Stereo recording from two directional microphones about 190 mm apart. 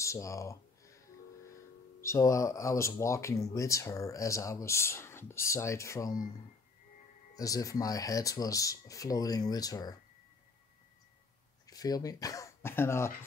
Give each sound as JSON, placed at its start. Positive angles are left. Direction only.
{"t": 0.0, "sound": "a sound", "side_deg": 15}
{"t": 2.0, "sound": "speech", "side_deg": 15}
{"t": 7.3, "sound": "speech", "side_deg": 20}
{"t": 11.6, "sound": "speech", "side_deg": 20}